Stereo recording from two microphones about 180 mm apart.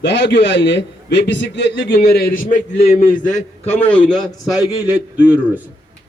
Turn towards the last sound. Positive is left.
turn(degrees=-5)  # may be behind; listen again after turning